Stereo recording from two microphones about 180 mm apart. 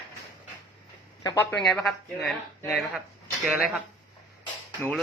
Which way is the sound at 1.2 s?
20° left (ahead or behind).